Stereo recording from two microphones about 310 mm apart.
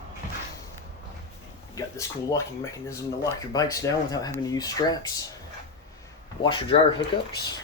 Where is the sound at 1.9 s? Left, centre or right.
Centre.